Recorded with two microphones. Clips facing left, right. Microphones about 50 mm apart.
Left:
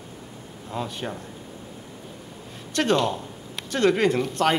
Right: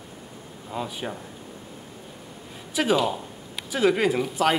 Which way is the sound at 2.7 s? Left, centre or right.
Centre.